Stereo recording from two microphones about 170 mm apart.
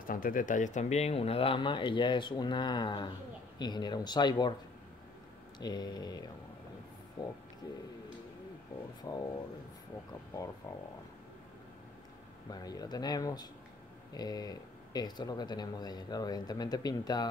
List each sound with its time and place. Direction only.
0.0 s speech: 55° left (ahead or behind); by 4.6 s 25° left (ahead or behind)
5.6 s speech: 25° left (ahead or behind)
9.1 s speech: 20° left (ahead or behind)
12.4 s speech: 20° left (ahead or behind)